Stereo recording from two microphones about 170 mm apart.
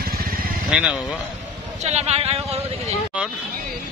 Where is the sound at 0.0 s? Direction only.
60° right (ahead or behind).